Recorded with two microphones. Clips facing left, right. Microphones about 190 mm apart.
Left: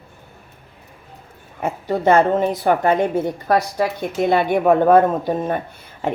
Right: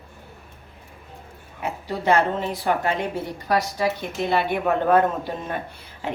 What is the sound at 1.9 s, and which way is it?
A woman's voice, 50° left (ahead or behind).